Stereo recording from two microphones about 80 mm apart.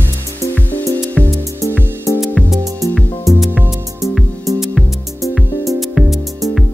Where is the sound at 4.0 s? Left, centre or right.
Centre.